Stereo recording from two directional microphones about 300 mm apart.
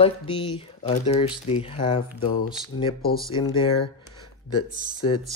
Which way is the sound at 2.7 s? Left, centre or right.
Left.